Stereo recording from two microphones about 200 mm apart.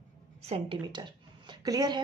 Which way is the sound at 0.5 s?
25° right (ahead or behind).